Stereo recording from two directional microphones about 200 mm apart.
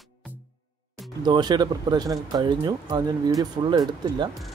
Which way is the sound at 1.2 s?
20° right (ahead or behind).